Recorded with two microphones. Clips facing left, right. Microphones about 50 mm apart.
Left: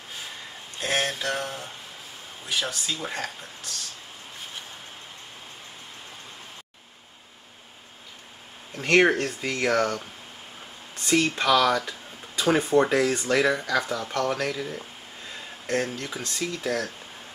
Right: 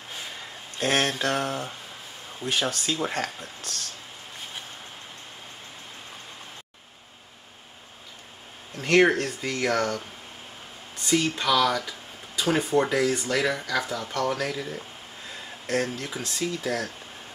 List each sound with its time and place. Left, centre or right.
0.7 s speech: right
8.7 s speech: centre
11.1 s speech: centre
13.0 s speech: centre
13.3 s speech: centre